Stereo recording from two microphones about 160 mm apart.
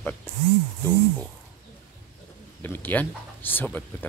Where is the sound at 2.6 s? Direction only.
15° left (ahead or behind).